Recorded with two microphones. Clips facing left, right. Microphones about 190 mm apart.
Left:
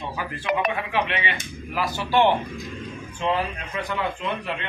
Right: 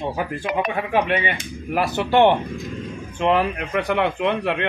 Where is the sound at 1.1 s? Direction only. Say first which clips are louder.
Right 6 dB; 50° right (ahead or behind).